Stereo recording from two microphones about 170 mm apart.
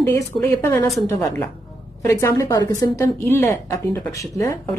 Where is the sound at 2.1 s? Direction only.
15° left (ahead or behind).